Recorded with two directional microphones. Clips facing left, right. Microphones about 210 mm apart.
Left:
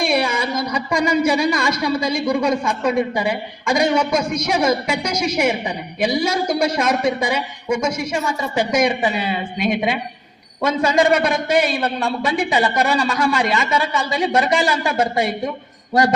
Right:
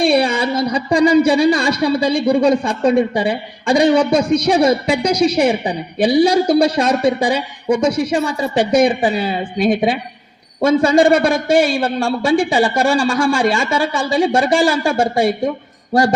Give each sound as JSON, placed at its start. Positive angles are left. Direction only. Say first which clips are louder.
{"t": 0.0, "sound": "a man's voice", "louder": "right 5 dB", "side_deg": -30}